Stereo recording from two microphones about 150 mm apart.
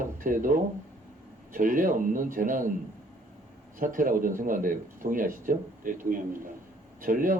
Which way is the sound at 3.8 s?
65° right (ahead or behind).